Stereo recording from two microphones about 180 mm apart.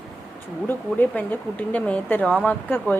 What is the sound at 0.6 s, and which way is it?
Speech, 10° left (ahead or behind).